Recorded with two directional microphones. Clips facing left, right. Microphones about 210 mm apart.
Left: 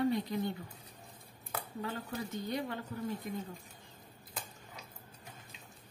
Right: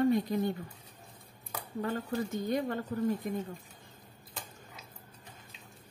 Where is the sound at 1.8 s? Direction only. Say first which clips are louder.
Right 8 dB; 45° right (ahead or behind).